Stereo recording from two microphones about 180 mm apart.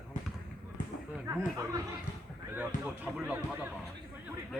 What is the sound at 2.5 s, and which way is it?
A man's voice, 10° right (ahead or behind).